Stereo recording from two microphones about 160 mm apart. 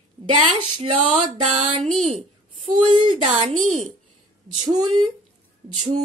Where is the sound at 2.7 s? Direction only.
30° right (ahead or behind).